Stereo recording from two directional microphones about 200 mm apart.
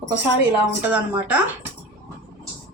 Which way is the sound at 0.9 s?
5° right (ahead or behind).